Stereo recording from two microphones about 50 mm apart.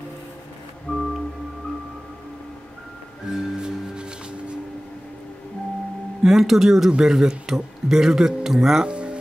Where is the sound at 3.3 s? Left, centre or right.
Centre.